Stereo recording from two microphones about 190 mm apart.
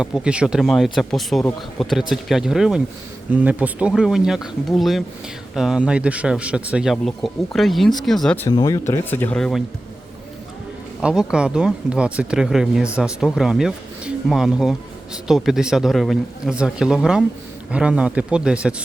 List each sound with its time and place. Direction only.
0.0 s speech: 5° right (ahead or behind)
8.4 s speech: 20° left (ahead or behind); by 9.6 s centre (ahead or behind)
11.0 s speech: 5° right (ahead or behind)